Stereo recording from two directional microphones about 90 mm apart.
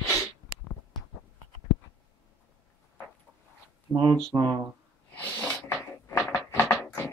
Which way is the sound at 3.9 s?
55° right (ahead or behind).